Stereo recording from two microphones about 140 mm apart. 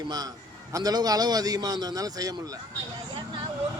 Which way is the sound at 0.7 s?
25° right (ahead or behind).